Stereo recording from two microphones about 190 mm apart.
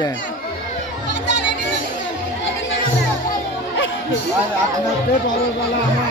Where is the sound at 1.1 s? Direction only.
65° left (ahead or behind).